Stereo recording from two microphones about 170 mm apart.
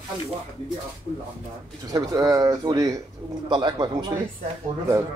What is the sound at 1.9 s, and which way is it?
Speech, 20° right (ahead or behind).